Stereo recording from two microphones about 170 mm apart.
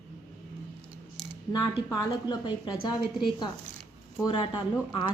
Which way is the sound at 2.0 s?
25° left (ahead or behind).